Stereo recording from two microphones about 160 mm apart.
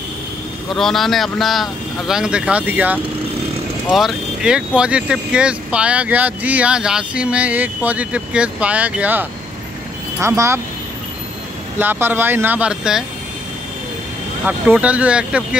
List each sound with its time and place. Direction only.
0.7 s speech: centre (ahead or behind); by 10.6 s 15° right (ahead or behind)
11.8 s speech: 10° right (ahead or behind)
14.4 s speech: 10° right (ahead or behind)